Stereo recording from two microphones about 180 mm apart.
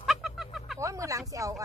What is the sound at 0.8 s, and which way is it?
Speech, 15° right (ahead or behind).